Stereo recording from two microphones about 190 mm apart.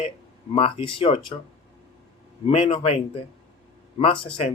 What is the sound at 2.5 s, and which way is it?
Speech, 30° left (ahead or behind).